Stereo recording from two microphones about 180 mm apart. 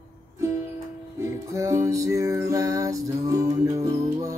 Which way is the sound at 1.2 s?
15° right (ahead or behind).